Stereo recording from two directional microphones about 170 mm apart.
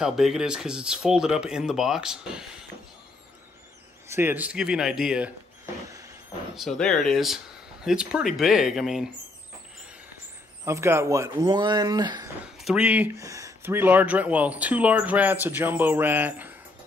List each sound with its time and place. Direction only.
0.0 s speech: 5° right (ahead or behind)
4.1 s speech: 10° right (ahead or behind)
6.5 s speech: centre (ahead or behind)
10.6 s speech: 15° right (ahead or behind)
12.6 s speech: 5° right (ahead or behind)